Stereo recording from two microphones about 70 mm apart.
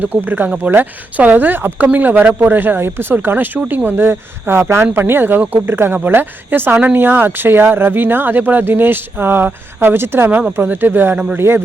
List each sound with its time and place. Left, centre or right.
0.0 s speech: right